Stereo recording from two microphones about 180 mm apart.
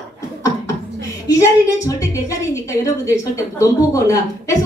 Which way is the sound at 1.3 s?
20° left (ahead or behind).